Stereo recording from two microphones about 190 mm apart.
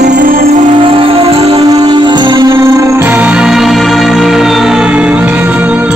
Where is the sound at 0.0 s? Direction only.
45° right (ahead or behind).